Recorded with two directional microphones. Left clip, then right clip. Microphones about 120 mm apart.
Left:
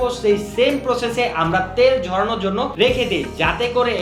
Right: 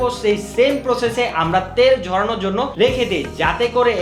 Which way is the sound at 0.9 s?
30° left (ahead or behind).